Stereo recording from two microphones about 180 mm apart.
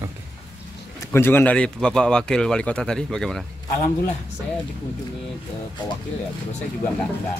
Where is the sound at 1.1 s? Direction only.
10° left (ahead or behind).